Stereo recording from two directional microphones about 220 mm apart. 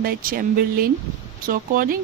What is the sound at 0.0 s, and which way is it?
Speech, 40° right (ahead or behind).